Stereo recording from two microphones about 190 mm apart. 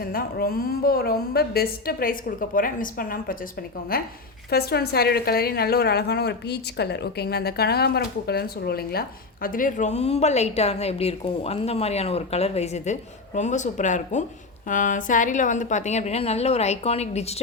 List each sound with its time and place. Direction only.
0.0 s a woman's voice: 50° left (ahead or behind); by 17.4 s 35° left (ahead or behind)